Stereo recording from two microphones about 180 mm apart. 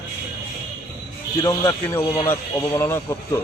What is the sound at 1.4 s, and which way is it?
A man's voice, 15° left (ahead or behind).